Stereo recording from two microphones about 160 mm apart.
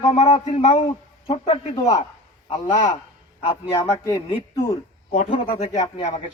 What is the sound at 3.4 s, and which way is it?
Speech, 25° left (ahead or behind).